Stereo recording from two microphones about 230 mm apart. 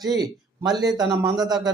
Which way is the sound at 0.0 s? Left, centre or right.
Centre.